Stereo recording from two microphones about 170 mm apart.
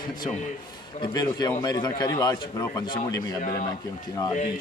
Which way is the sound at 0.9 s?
25° left (ahead or behind).